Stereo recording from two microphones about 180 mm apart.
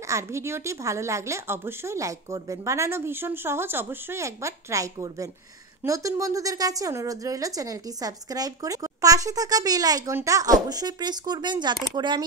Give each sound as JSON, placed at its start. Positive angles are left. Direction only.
{"t": 0.1, "sound": "a woman's voice", "side_deg": -15}